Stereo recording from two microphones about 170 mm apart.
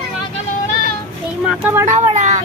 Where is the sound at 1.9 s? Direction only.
45° right (ahead or behind).